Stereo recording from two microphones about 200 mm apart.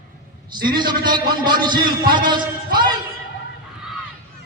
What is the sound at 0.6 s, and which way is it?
A man's voice, 20° right (ahead or behind).